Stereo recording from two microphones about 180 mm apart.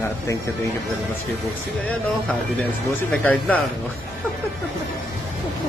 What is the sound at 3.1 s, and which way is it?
Speech, 10° left (ahead or behind).